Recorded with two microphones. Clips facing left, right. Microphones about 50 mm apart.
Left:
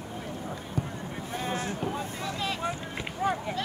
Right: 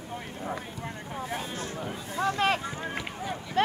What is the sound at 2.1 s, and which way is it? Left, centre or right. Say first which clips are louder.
Speech: right 7 dB; right.